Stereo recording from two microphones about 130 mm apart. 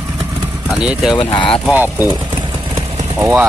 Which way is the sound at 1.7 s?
15° right (ahead or behind).